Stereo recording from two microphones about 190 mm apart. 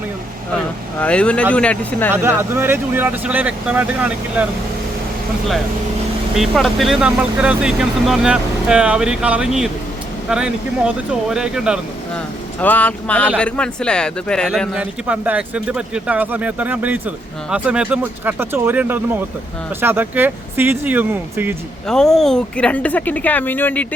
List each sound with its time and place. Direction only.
0.9 s speech: 5° left (ahead or behind)
2.1 s speech: 10° right (ahead or behind)
6.3 s speech: centre (ahead or behind)
12.5 s speech: 10° left (ahead or behind); by 21.5 s 10° right (ahead or behind)
21.8 s speech: 5° left (ahead or behind)